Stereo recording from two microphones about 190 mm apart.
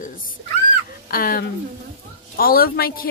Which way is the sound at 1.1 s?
50° left (ahead or behind).